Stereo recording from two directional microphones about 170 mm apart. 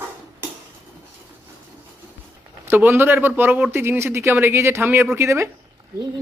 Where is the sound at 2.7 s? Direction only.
10° right (ahead or behind).